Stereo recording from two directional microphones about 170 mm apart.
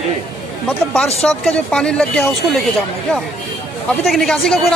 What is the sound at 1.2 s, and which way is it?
A man's voice, 5° left (ahead or behind).